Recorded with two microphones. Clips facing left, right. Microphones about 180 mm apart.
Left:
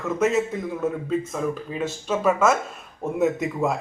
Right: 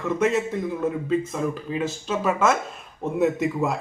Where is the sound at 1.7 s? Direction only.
Centre (ahead or behind).